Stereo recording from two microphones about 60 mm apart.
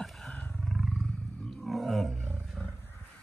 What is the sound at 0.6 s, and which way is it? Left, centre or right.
Wild animals, centre.